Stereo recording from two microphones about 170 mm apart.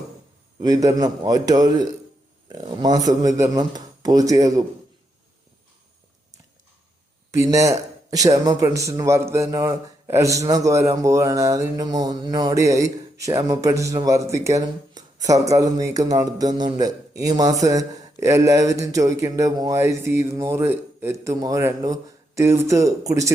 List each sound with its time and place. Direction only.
0.6 s speech: 20° right (ahead or behind)
7.3 s speech: 20° right (ahead or behind)